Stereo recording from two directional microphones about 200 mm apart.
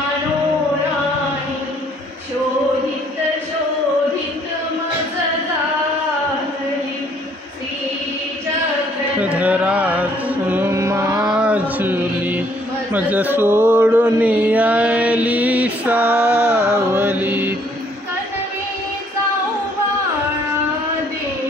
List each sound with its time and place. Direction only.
9.2 s carnatic music: 5° right (ahead or behind)
11.2 s mantra: 5° right (ahead or behind)